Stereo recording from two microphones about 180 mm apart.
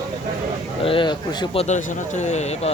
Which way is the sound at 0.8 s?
30° left (ahead or behind).